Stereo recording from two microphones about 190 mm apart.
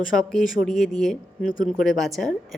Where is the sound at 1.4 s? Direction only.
45° left (ahead or behind).